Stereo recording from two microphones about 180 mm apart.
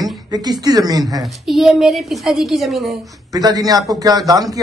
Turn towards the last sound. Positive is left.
turn(degrees=-20)  # may be behind; listen again after turning